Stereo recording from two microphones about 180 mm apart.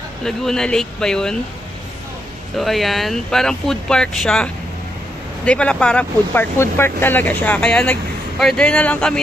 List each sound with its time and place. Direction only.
0.2 s speech: 5° left (ahead or behind)
2.5 s speech: centre (ahead or behind)